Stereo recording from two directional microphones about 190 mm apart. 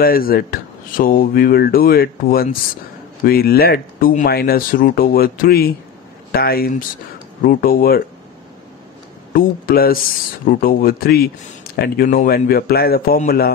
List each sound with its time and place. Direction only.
0.0 s speech: 50° left (ahead or behind)
9.3 s speech: 50° left (ahead or behind)